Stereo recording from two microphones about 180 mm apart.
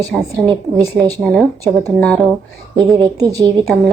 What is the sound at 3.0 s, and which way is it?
Speech, 20° right (ahead or behind).